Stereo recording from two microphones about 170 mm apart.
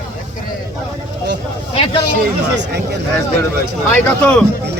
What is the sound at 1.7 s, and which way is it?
Speech, 30° left (ahead or behind).